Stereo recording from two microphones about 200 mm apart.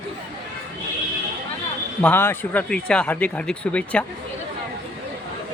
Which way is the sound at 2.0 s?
10° left (ahead or behind).